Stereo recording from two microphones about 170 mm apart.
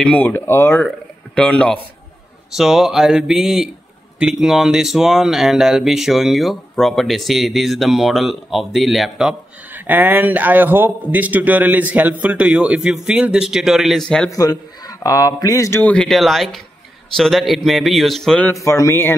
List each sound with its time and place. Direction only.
0.0 s speech: 10° left (ahead or behind)
14.3 s speech: 20° left (ahead or behind); by 18.5 s 5° left (ahead or behind)
18.5 s speech: 15° left (ahead or behind)